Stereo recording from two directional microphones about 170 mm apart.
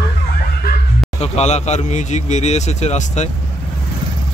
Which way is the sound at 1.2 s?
40° left (ahead or behind).